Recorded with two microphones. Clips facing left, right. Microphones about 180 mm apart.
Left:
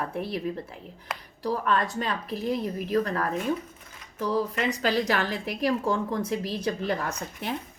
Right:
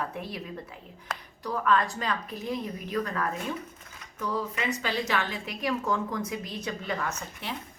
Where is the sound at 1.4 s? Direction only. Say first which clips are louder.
Even; 30° left (ahead or behind).